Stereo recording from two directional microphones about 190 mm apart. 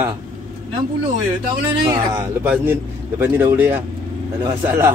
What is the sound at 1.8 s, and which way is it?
Speech, 20° right (ahead or behind).